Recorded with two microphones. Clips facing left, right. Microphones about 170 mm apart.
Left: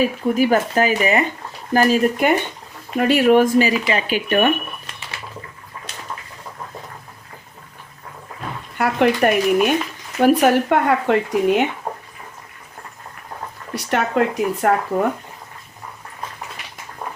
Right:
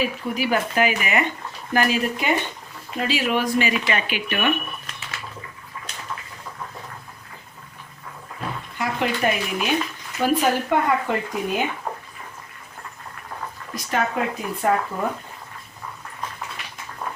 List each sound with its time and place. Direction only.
0.0 s speech: 45° left (ahead or behind)
3.0 s speech: 60° left (ahead or behind); by 4.5 s 40° left (ahead or behind)
8.8 s speech: 60° left (ahead or behind)
10.2 s speech: 60° left (ahead or behind)
11.9 s a sound: 30° left (ahead or behind)
13.7 s speech: 70° left (ahead or behind)